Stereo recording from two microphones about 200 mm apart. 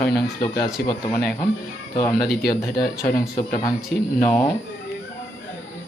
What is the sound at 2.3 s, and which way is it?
Speech, 50° left (ahead or behind).